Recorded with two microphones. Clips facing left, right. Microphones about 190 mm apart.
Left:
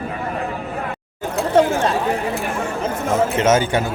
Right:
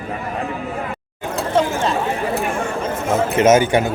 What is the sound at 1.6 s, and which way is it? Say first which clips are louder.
Chatter: left 3 dB; 55° left (ahead or behind).